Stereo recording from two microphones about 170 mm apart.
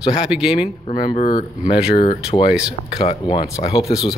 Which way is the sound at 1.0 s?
30° left (ahead or behind).